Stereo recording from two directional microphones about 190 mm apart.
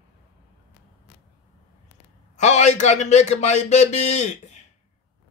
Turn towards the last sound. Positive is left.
turn(degrees=40)  # may be behind; listen again after turning